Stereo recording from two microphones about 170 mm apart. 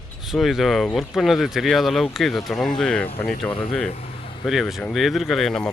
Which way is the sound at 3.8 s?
40° left (ahead or behind).